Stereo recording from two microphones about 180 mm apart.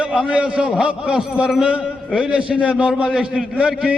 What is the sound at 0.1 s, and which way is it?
A man's voice, 5° right (ahead or behind).